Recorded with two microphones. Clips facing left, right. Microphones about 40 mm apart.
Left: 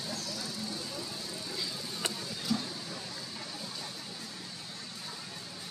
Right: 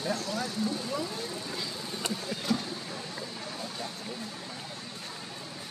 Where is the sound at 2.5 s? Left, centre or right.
Right.